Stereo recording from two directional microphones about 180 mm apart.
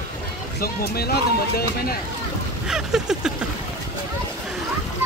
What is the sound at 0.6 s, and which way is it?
Speech, 60° left (ahead or behind).